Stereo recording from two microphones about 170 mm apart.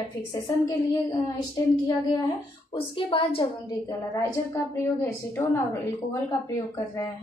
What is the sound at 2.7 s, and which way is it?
Speech, 30° left (ahead or behind).